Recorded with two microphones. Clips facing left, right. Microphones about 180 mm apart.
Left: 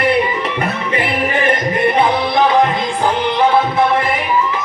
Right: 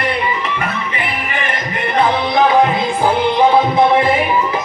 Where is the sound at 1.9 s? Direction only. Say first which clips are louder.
Even; 5° left (ahead or behind).